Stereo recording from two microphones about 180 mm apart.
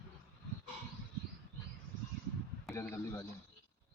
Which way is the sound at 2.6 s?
15° left (ahead or behind).